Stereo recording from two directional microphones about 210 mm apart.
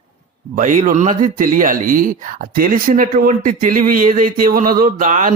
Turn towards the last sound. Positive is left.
turn(degrees=-40)  # may be behind; listen again after turning